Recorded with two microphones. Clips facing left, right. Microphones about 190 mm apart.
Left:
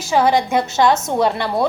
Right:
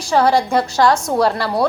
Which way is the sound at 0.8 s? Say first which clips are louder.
Even; 20° left (ahead or behind).